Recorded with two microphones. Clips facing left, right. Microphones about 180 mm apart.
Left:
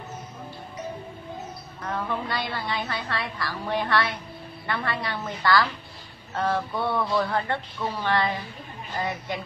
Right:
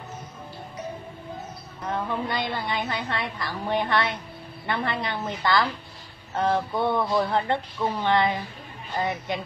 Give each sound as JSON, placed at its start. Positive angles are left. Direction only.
{"t": 1.9, "sound": "a woman's voice", "side_deg": -20}